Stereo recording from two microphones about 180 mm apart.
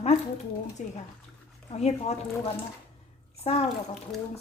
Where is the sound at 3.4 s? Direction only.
35° left (ahead or behind).